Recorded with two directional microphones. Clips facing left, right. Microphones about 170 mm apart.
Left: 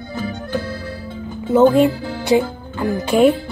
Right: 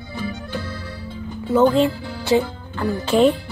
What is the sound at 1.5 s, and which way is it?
A woman's voice, 20° left (ahead or behind).